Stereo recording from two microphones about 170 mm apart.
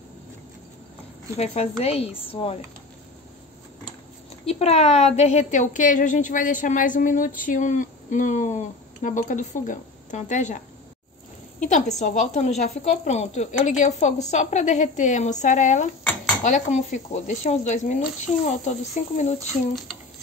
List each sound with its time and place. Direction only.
1.3 s speech: 40° left (ahead or behind)
4.5 s a woman's voice: 35° left (ahead or behind)
11.6 s a woman's voice: 45° left (ahead or behind)